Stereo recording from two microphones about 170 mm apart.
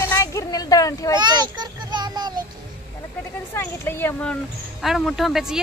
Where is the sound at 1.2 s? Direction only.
25° right (ahead or behind).